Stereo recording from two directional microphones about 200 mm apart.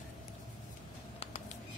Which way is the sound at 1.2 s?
35° left (ahead or behind).